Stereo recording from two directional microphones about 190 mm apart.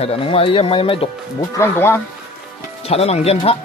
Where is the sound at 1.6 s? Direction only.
10° left (ahead or behind).